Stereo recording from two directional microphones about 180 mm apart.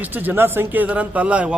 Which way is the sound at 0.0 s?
10° right (ahead or behind).